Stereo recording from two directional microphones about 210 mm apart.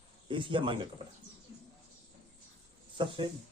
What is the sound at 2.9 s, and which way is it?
Speech, 25° right (ahead or behind).